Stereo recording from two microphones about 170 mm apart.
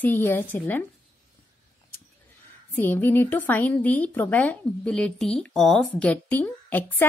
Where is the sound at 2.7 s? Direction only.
10° left (ahead or behind).